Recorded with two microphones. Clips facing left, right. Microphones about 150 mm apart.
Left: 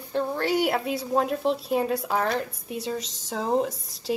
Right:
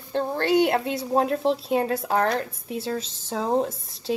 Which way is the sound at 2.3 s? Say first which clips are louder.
Right 2 dB; centre (ahead or behind).